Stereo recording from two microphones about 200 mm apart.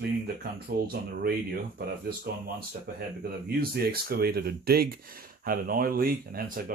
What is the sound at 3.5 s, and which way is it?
Speech, 50° right (ahead or behind).